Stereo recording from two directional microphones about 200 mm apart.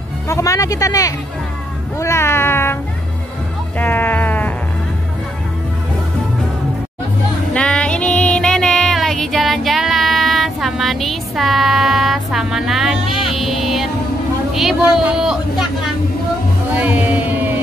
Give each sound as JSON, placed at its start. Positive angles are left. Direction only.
{"t": 0.3, "sound": "speech", "side_deg": 15}
{"t": 3.7, "sound": "music", "side_deg": 10}
{"t": 7.5, "sound": "music", "side_deg": 5}
{"t": 14.5, "sound": "speech", "side_deg": 0}
{"t": 16.7, "sound": "a sound", "side_deg": -5}